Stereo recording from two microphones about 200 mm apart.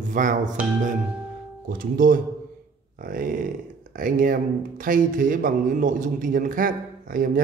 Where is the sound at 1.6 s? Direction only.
45° right (ahead or behind).